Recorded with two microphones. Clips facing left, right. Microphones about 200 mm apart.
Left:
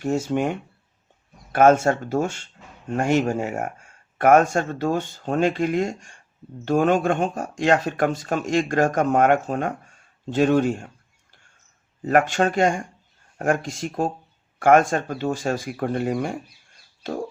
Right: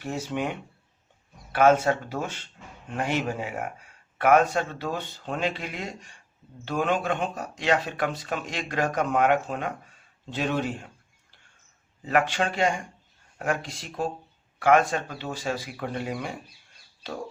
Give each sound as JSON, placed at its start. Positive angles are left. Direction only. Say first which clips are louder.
{"t": 0.0, "sound": "speech", "louder": "left 7 dB", "side_deg": 45}
{"t": 12.0, "sound": "speech", "louder": "left 5 dB", "side_deg": 45}